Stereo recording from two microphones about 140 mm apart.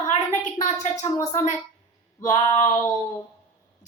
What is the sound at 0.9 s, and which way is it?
Speech, 25° left (ahead or behind).